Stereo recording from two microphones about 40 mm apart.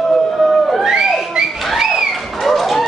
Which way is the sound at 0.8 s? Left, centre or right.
Centre.